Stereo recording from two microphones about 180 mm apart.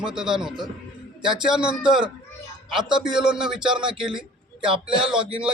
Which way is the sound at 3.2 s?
5° right (ahead or behind).